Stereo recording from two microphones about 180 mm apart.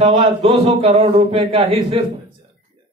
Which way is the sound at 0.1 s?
35° right (ahead or behind).